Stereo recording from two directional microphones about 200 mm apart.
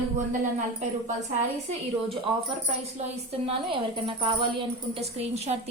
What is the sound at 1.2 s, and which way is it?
A woman's voice, 30° right (ahead or behind).